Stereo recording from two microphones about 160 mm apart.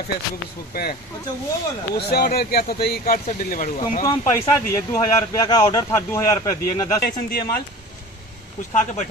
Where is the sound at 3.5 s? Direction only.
60° left (ahead or behind).